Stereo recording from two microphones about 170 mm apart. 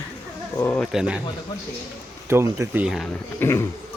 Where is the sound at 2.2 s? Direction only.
15° right (ahead or behind).